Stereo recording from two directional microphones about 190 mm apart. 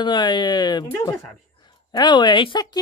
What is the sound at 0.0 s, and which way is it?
Speech, 25° left (ahead or behind).